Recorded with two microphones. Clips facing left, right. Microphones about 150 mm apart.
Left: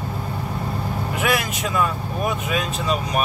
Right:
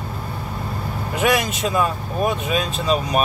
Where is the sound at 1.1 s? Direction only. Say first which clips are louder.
Right 4 dB; 20° right (ahead or behind).